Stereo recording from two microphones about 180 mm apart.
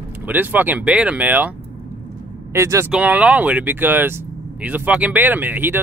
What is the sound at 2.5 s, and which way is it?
Speech, 15° right (ahead or behind).